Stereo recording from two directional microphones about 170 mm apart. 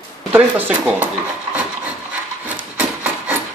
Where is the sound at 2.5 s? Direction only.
10° right (ahead or behind).